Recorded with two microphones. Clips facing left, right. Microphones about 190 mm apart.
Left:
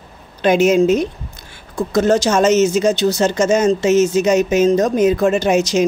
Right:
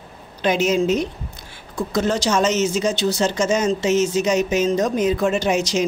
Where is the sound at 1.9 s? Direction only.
45° left (ahead or behind).